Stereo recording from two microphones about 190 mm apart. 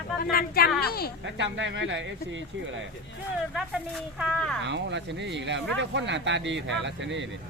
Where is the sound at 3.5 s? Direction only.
Centre (ahead or behind).